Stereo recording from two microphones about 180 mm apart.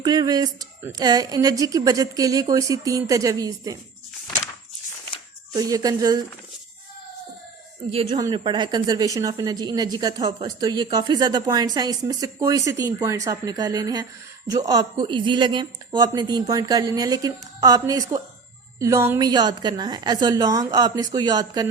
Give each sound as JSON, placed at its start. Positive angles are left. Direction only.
{"t": 0.0, "sound": "a woman's voice", "side_deg": -20}
{"t": 5.5, "sound": "a woman's voice", "side_deg": -20}
{"t": 7.9, "sound": "a woman's voice", "side_deg": -30}